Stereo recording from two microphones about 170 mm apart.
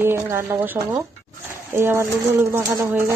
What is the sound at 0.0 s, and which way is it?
Speech, 15° right (ahead or behind).